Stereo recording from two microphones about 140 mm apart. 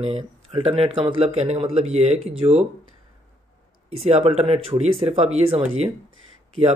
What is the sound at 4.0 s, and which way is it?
Speech, 50° right (ahead or behind).